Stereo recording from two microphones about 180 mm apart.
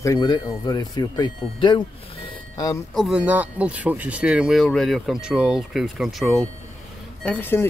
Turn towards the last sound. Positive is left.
turn(degrees=10)  # may be behind; listen again after turning